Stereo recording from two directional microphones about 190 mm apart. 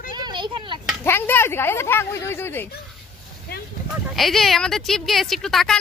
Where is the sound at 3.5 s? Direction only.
55° left (ahead or behind).